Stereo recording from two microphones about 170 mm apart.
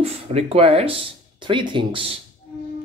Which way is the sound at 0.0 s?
40° right (ahead or behind).